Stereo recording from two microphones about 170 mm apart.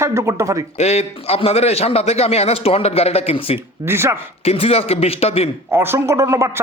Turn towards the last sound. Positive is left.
turn(degrees=-15)  # may be behind; listen again after turning